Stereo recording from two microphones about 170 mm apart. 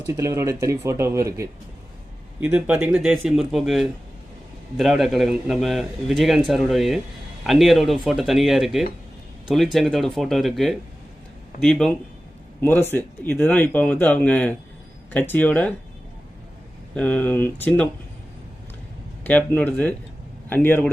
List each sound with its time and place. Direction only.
0.1 s a man's voice: 15° right (ahead or behind); by 15.7 s 10° left (ahead or behind)
16.9 s speech: 5° left (ahead or behind)
19.2 s speech: 10° left (ahead or behind)